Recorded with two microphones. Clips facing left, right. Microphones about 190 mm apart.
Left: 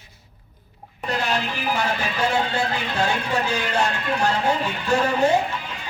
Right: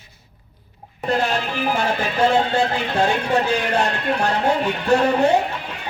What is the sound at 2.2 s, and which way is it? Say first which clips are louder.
Speech: right 6 dB; 50° right (ahead or behind).